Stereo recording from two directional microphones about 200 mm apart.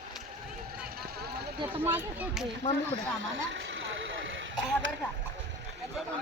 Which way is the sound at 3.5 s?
65° right (ahead or behind).